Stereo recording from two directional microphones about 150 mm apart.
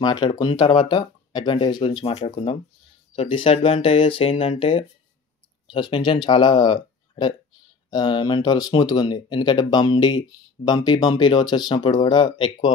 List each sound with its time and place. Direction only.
0.0 s speech: 30° left (ahead or behind)